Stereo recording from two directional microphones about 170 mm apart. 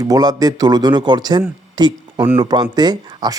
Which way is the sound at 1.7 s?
25° right (ahead or behind).